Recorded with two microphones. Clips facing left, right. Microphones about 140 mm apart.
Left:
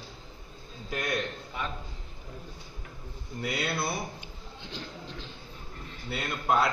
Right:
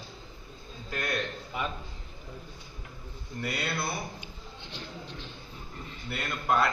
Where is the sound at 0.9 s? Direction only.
20° left (ahead or behind).